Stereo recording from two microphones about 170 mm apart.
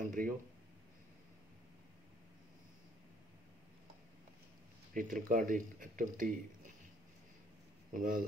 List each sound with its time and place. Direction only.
0.0 s speech: 50° right (ahead or behind)
4.9 s speech: 50° right (ahead or behind)
7.9 s speech: 55° right (ahead or behind)